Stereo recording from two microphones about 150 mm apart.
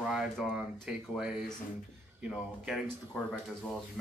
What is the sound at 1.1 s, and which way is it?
A man's voice, 5° right (ahead or behind).